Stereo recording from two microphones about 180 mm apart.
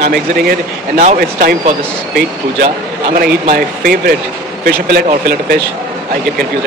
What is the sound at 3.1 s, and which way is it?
Speech, 60° right (ahead or behind).